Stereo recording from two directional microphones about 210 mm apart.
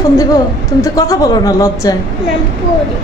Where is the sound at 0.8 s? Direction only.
15° left (ahead or behind).